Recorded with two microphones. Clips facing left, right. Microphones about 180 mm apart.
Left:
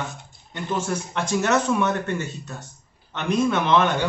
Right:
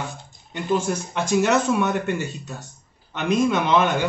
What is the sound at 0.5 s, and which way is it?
Speech, 15° right (ahead or behind).